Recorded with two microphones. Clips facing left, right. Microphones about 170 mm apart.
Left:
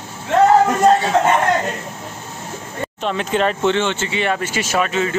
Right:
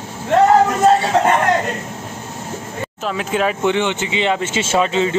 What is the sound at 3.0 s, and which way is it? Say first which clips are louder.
Speech: left 1 dB; 5° right (ahead or behind).